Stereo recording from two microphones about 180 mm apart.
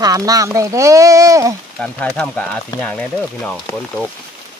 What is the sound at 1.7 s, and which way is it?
Speech, 5° left (ahead or behind).